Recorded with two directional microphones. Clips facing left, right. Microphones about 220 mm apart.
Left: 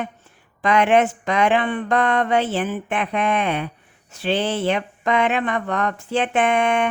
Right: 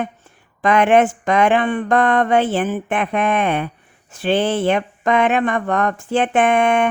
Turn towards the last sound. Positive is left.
turn(degrees=-50)  # may be behind; listen again after turning